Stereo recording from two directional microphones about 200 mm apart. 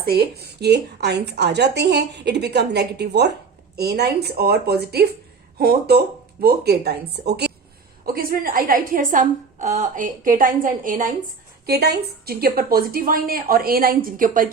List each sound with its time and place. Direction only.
0.0 s a woman's voice: 50° right (ahead or behind)